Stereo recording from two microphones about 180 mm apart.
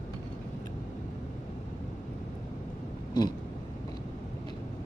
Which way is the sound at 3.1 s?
25° left (ahead or behind).